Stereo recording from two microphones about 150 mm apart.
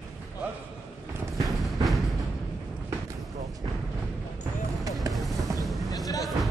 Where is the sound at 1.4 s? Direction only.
Centre (ahead or behind).